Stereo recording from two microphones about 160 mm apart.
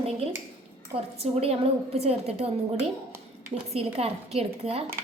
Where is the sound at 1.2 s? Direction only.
40° right (ahead or behind).